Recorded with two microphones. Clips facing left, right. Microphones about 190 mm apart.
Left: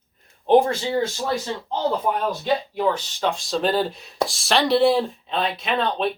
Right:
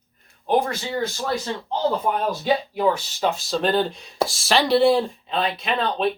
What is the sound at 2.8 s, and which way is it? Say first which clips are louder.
Speech: right 1 dB; 10° right (ahead or behind).